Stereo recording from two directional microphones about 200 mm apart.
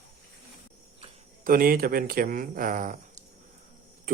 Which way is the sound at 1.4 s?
45° right (ahead or behind).